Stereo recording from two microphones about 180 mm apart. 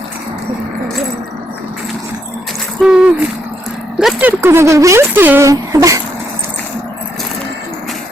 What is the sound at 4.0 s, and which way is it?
Speech, 5° right (ahead or behind).